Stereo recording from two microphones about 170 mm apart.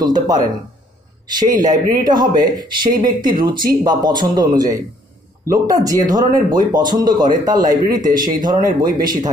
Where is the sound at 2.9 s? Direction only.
55° right (ahead or behind).